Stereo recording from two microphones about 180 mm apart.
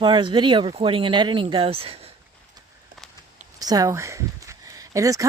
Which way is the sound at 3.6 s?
20° right (ahead or behind).